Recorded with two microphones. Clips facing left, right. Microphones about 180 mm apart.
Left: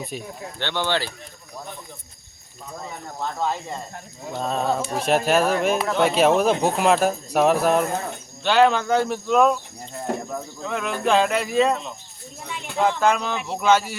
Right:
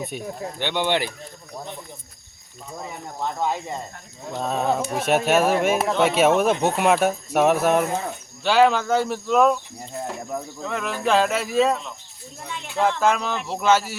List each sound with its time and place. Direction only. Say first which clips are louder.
0.6 s speech: right 2 dB; 15° right (ahead or behind)
3.2 s speech: right 1 dB; 15° right (ahead or behind)
4.2 s speech: even; centre (ahead or behind)